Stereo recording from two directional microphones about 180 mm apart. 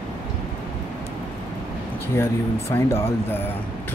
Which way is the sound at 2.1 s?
15° left (ahead or behind).